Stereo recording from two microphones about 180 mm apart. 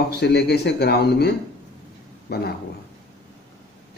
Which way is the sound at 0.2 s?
65° left (ahead or behind).